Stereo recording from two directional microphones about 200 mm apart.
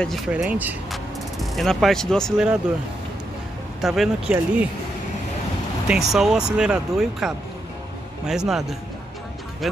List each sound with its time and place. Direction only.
0.0 s speech: centre (ahead or behind)
3.8 s speech: centre (ahead or behind)
5.9 s speech: centre (ahead or behind)